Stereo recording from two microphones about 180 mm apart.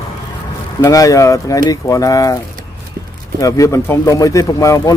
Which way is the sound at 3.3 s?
20° left (ahead or behind).